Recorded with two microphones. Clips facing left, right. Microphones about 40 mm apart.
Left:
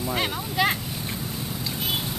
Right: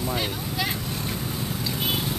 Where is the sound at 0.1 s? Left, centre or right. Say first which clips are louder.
Left 1 dB; left.